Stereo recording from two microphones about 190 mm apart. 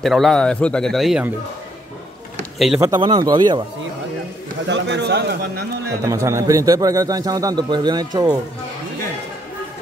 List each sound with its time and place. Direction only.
0.0 s speech: centre (ahead or behind)
2.8 s a man's voice: 20° right (ahead or behind)
4.6 s a man's voice: 70° right (ahead or behind)
6.0 s a man's voice: 15° right (ahead or behind)